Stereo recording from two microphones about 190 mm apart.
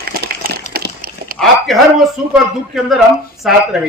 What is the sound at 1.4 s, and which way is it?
A man's voice, centre (ahead or behind).